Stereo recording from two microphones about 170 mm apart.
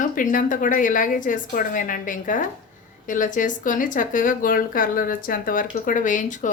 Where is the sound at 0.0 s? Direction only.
50° left (ahead or behind).